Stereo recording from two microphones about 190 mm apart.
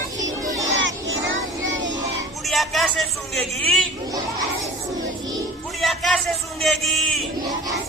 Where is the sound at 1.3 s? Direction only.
85° right.